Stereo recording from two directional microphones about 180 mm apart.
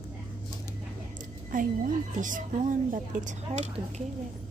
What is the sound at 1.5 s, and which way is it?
A woman's voice, 45° right (ahead or behind).